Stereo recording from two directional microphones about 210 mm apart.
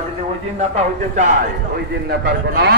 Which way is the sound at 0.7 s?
35° right (ahead or behind).